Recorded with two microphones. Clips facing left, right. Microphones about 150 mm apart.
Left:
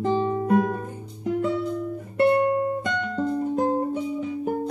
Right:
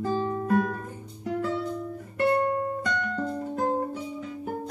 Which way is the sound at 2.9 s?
20° left (ahead or behind).